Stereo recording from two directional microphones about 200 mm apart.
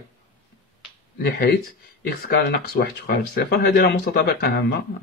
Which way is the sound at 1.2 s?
50° left (ahead or behind).